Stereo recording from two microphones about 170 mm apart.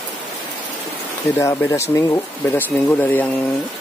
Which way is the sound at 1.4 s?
15° left (ahead or behind).